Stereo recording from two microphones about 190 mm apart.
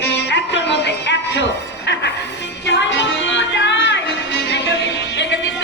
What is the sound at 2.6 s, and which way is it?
Music, 70° left (ahead or behind).